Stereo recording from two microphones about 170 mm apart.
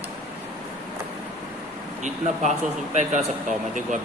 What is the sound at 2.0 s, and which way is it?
A man's voice, 45° right (ahead or behind).